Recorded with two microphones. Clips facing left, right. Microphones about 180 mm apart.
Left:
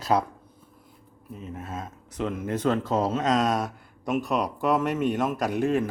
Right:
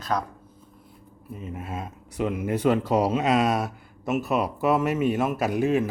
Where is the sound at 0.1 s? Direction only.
20° left (ahead or behind).